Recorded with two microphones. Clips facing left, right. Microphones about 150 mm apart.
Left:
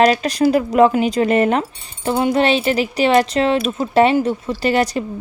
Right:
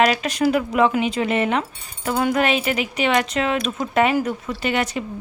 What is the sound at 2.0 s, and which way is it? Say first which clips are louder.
Speech: left 4 dB; 25° left (ahead or behind).